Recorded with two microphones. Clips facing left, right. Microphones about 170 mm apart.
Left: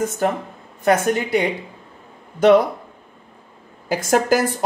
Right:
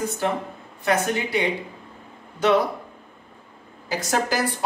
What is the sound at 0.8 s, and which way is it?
Speech, 50° left (ahead or behind).